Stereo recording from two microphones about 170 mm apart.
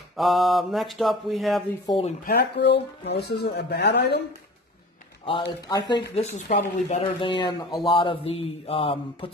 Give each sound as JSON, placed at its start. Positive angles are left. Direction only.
{"t": 0.1, "sound": "speech", "side_deg": 0}
{"t": 2.2, "sound": "speech", "side_deg": 80}
{"t": 5.7, "sound": "speech", "side_deg": 25}
{"t": 6.1, "sound": "speech", "side_deg": 45}
{"t": 7.2, "sound": "speech", "side_deg": 30}